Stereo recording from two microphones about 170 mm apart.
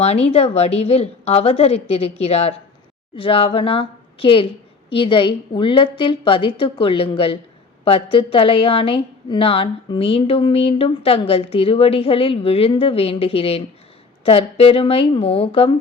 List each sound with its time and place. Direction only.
0.0 s a woman's voice: 35° left (ahead or behind)